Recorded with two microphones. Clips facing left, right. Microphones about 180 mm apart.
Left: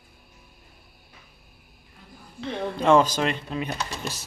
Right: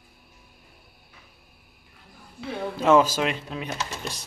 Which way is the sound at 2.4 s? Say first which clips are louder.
Left 1 dB; 5° right (ahead or behind).